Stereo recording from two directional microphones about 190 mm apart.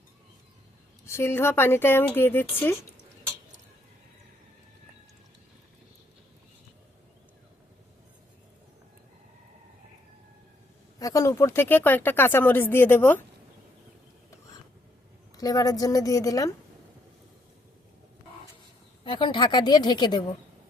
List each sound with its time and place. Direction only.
1.0 s speech: 15° left (ahead or behind)
11.0 s speech: 15° left (ahead or behind)
15.4 s a woman's voice: 20° left (ahead or behind)
19.0 s a woman's voice: 25° left (ahead or behind)